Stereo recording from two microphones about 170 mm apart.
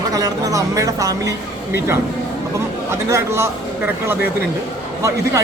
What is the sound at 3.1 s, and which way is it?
Speech, 15° right (ahead or behind).